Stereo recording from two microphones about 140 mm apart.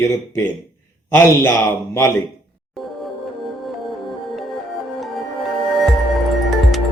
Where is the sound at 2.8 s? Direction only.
Centre (ahead or behind).